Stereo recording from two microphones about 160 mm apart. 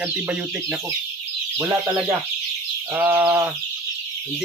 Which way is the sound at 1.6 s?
15° right (ahead or behind).